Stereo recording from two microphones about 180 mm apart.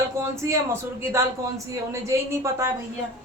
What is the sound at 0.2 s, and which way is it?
Speech, 15° right (ahead or behind).